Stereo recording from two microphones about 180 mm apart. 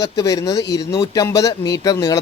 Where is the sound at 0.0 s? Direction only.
20° left (ahead or behind).